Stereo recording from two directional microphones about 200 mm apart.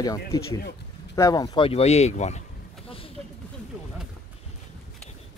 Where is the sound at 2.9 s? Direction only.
30° left (ahead or behind).